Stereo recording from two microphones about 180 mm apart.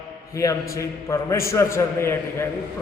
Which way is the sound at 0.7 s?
15° left (ahead or behind).